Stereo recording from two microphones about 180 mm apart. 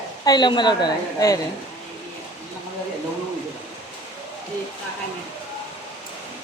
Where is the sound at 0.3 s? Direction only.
25° left (ahead or behind).